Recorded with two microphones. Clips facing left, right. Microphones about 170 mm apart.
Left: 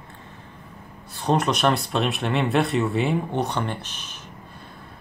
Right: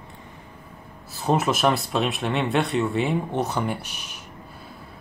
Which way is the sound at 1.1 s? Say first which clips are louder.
Even; 5° right (ahead or behind).